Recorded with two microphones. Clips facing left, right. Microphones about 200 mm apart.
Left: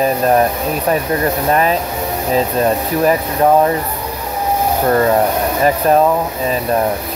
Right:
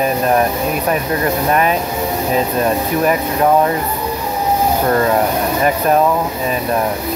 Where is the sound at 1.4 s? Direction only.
35° left (ahead or behind).